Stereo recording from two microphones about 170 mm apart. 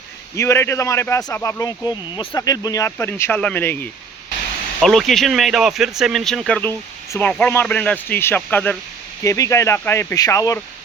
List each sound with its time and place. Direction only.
0.3 s speech: 15° left (ahead or behind)
4.8 s speech: centre (ahead or behind); by 10.6 s 20° left (ahead or behind)